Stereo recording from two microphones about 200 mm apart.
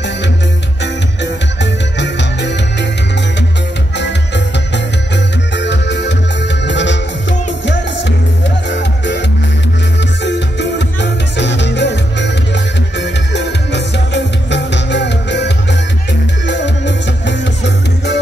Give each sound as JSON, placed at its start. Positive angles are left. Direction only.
{"t": 1.2, "sound": "music", "side_deg": 60}
{"t": 4.7, "sound": "music", "side_deg": 60}
{"t": 10.2, "sound": "music", "side_deg": 60}